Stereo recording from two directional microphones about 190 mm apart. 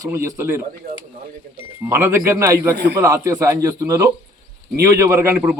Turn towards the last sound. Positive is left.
turn(degrees=-10)  # may be behind; listen again after turning